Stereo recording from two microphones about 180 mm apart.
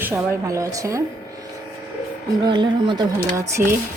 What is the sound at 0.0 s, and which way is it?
Speech, 15° right (ahead or behind).